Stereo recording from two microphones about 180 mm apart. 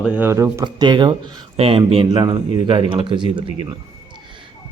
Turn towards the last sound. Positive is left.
turn(degrees=-25)  # may be behind; listen again after turning